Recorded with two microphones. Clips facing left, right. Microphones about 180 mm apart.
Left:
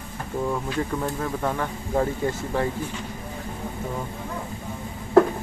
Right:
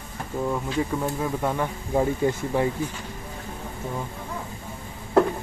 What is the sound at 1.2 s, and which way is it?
Speech, 10° right (ahead or behind).